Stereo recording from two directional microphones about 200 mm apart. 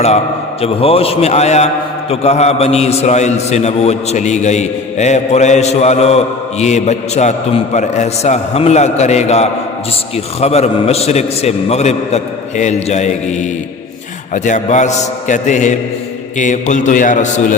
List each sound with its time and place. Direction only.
0.6 s a man's voice: 30° left (ahead or behind)